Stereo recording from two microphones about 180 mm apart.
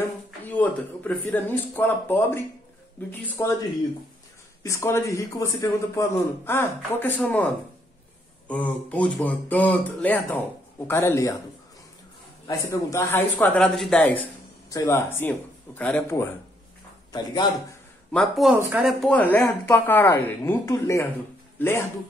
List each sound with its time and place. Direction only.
0.5 s a man's voice: 10° left (ahead or behind)
4.6 s a man's voice: 15° left (ahead or behind)
8.5 s a man's voice: 5° left (ahead or behind)
12.4 s a man's voice: 15° left (ahead or behind)
17.1 s a man's voice: 25° left (ahead or behind)
18.1 s speech: centre (ahead or behind)
19.0 s a man's voice: 5° left (ahead or behind)